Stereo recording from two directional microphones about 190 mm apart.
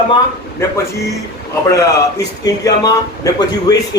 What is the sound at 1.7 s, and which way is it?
A man's voice, 20° left (ahead or behind).